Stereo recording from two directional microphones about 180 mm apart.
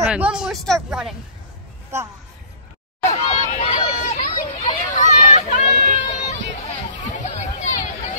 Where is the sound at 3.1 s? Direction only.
40° left (ahead or behind).